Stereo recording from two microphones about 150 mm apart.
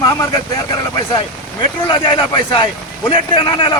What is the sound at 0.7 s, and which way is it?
A man's voice, 25° left (ahead or behind).